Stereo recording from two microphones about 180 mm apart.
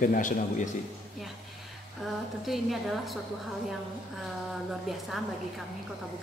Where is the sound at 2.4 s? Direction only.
Centre (ahead or behind).